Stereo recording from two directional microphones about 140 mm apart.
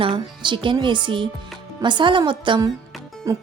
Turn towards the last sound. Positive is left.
turn(degrees=-25)  # may be behind; listen again after turning